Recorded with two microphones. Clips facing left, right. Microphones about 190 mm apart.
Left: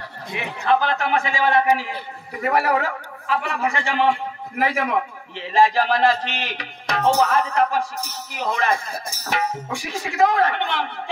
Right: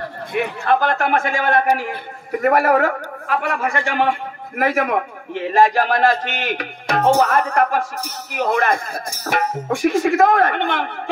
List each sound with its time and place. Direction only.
0.3 s a man's voice: 55° right (ahead or behind)